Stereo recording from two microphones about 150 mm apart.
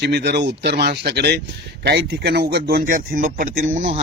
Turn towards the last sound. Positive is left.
turn(degrees=-60)  # may be behind; listen again after turning